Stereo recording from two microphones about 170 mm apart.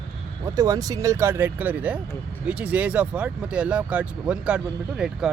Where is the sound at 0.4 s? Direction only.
20° right (ahead or behind).